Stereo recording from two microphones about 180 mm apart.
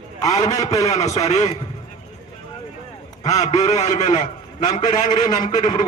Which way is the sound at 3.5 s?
40° left (ahead or behind).